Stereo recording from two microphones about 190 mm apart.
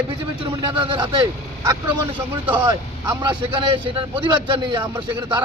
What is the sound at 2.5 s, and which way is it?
A man's voice, 20° right (ahead or behind).